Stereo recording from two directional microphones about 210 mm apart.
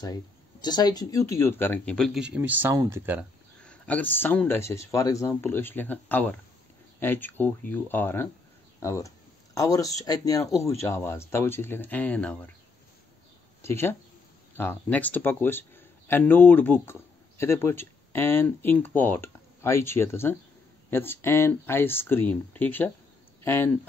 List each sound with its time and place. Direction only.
0.0 s speech: 20° left (ahead or behind); by 3.3 s 10° right (ahead or behind)
3.6 s speech: 5° left (ahead or behind)
13.6 s a man's voice: 10° left (ahead or behind)